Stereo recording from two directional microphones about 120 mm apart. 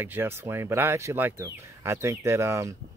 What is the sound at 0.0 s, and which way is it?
Speech, 20° right (ahead or behind).